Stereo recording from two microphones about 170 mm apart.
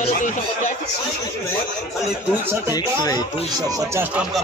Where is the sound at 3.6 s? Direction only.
20° right (ahead or behind).